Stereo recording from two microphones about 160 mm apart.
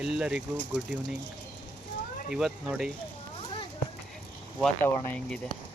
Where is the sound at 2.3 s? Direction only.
5° right (ahead or behind).